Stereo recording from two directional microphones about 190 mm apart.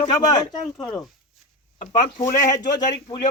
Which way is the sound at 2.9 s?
20° left (ahead or behind).